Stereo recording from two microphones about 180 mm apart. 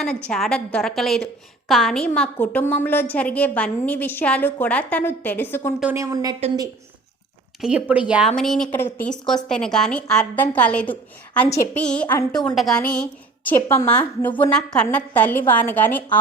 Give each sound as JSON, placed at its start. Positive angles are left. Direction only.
{"t": 0.0, "sound": "a woman's voice", "side_deg": 5}
{"t": 5.8, "sound": "a woman's voice", "side_deg": -15}
{"t": 7.6, "sound": "a woman's voice", "side_deg": -5}